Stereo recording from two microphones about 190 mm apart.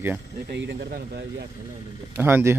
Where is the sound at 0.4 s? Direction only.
60° right (ahead or behind).